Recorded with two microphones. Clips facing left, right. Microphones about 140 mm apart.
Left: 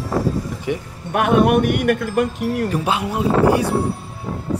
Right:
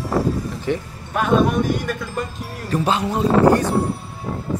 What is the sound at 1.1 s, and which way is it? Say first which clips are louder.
Speech: left 3 dB; 65° left (ahead or behind).